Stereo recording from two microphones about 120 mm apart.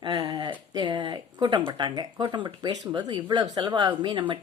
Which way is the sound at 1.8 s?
40° right (ahead or behind).